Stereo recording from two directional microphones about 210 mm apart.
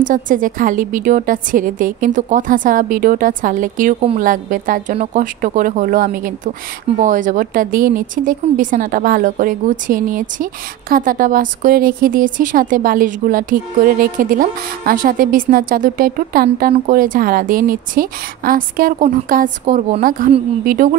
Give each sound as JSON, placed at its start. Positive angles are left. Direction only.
{"t": 0.0, "sound": "speech", "side_deg": -40}